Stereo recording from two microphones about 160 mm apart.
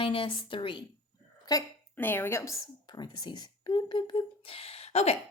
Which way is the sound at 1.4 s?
15° left (ahead or behind).